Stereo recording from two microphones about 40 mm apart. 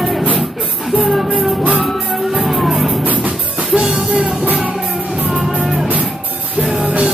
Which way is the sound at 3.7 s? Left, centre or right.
Right.